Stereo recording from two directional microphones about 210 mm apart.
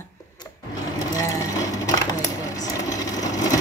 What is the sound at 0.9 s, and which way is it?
Sewing machine, 15° left (ahead or behind).